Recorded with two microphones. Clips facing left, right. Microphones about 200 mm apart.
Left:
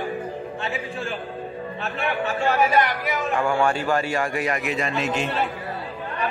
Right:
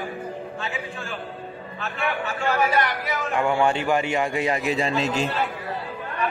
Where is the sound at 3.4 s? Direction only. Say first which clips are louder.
Right 2 dB; 20° right (ahead or behind).